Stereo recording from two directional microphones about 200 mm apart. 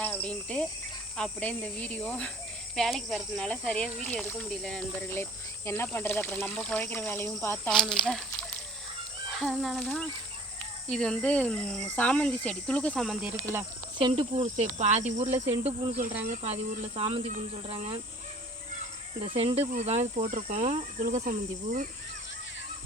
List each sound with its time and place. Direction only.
0.0 s cricket: 5° left (ahead or behind)
1.1 s speech: 5° left (ahead or behind)
14.0 s cricket: 30° right (ahead or behind)
16.3 s speech: 35° right (ahead or behind)
19.4 s speech: 30° right (ahead or behind)
19.7 s cricket: 35° right (ahead or behind)